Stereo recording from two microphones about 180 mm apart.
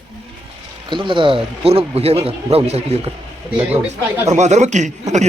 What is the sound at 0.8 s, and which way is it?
A man's voice, 25° right (ahead or behind).